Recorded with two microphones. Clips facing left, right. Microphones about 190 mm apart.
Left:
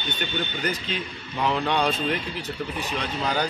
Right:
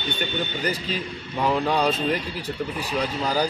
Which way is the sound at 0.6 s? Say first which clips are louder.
Right 2 dB; 35° right (ahead or behind).